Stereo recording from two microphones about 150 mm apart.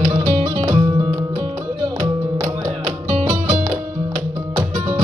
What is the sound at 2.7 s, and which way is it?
Music, 45° right (ahead or behind).